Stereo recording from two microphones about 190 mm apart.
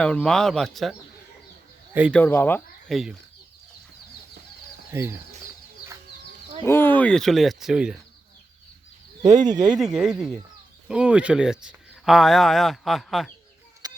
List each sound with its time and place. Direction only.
0.0 s speech: 5° left (ahead or behind)
2.1 s speech: 10° left (ahead or behind)
2.9 s speech: centre (ahead or behind)
4.9 s speech: 10° right (ahead or behind)
6.6 s speech: 10° left (ahead or behind); by 7.9 s 5° right (ahead or behind)
9.3 s speech: 20° right (ahead or behind)
9.7 s speech: 5° right (ahead or behind)
13.8 s a sound: 20° right (ahead or behind)